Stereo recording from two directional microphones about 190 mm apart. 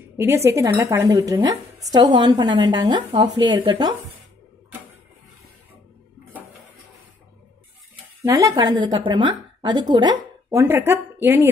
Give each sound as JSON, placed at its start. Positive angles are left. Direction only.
{"t": 0.2, "sound": "a woman's voice", "side_deg": -15}
{"t": 8.2, "sound": "a woman's voice", "side_deg": -15}
{"t": 10.6, "sound": "a woman's voice", "side_deg": -10}